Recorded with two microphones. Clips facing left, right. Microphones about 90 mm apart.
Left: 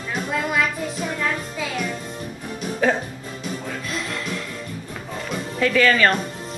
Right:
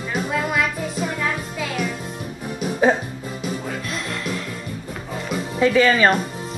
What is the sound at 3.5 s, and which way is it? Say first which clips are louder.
Music: right 1 dB; centre (ahead or behind).